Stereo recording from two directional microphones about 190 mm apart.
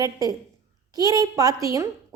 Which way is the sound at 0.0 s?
20° right (ahead or behind).